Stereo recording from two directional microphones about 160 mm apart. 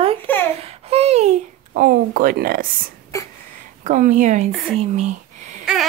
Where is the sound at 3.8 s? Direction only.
50° right (ahead or behind).